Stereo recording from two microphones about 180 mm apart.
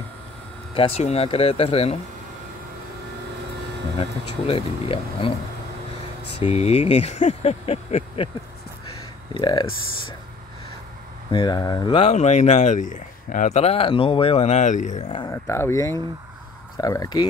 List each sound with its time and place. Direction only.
0.7 s speech: 35° left (ahead or behind)
4.0 s speech: 30° left (ahead or behind)
6.4 s speech: 35° left (ahead or behind)
9.3 s speech: 25° left (ahead or behind)
11.2 s speech: 25° left (ahead or behind); by 15.0 s 45° left (ahead or behind)
15.0 s speech: 30° left (ahead or behind)
15.3 s speech: 15° left (ahead or behind)